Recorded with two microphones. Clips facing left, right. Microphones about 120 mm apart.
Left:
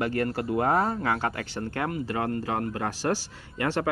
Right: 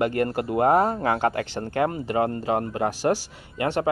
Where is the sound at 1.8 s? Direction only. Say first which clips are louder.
Right 4 dB; 25° right (ahead or behind).